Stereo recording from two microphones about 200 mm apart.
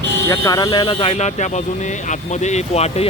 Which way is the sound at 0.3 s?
20° left (ahead or behind).